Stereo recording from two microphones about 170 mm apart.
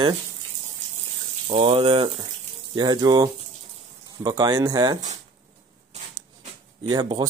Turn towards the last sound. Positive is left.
turn(degrees=-25)  # may be behind; listen again after turning